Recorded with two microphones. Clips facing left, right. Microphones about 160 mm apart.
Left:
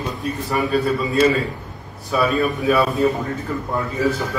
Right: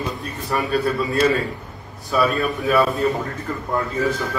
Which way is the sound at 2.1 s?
Centre (ahead or behind).